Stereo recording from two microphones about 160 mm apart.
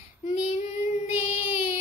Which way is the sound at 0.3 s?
45° left (ahead or behind).